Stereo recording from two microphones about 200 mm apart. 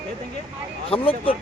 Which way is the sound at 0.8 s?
30° left (ahead or behind).